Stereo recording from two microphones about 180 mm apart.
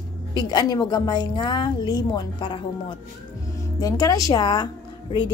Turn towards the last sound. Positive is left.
turn(degrees=25)  # may be behind; listen again after turning